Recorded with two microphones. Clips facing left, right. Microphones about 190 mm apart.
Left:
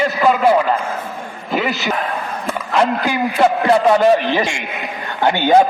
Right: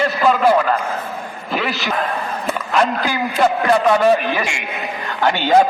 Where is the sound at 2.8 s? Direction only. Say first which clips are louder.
Left 2 dB; 20° left (ahead or behind).